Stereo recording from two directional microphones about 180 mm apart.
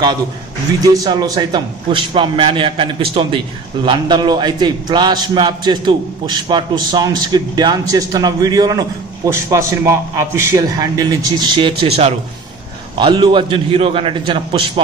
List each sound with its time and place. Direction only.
0.9 s a man's voice: 20° right (ahead or behind)